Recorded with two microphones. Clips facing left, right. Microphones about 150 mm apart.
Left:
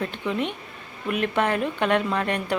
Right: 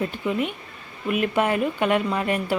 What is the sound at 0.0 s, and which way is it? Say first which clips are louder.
Speech: right 2 dB; 5° right (ahead or behind).